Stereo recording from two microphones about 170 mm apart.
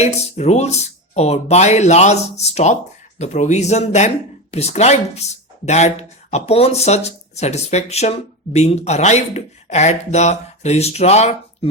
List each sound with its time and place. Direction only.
0.0 s speech: 40° left (ahead or behind)